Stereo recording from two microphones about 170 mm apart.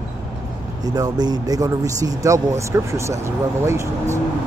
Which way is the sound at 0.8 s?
20° right (ahead or behind).